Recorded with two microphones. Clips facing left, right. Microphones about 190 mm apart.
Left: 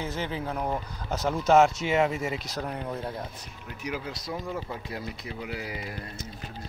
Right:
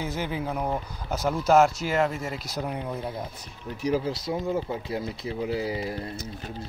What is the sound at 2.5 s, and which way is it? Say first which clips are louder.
Speech: right 2 dB; 10° right (ahead or behind).